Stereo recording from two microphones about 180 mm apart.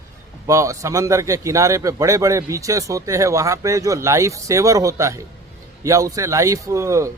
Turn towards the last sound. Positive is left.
turn(degrees=-15)  # may be behind; listen again after turning